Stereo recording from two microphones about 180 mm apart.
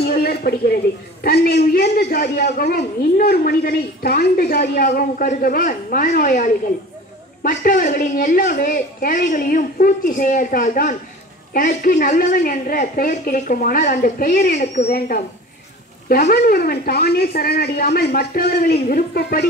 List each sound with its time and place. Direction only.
0.0 s a sound: 60° left (ahead or behind)
1.2 s a woman's voice: 60° left (ahead or behind)
4.8 s a woman's voice: 45° left (ahead or behind)
14.9 s a woman's voice: 55° left (ahead or behind)